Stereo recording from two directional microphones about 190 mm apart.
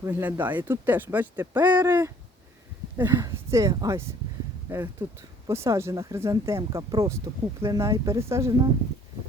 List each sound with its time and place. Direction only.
0.0 s speech: 10° right (ahead or behind)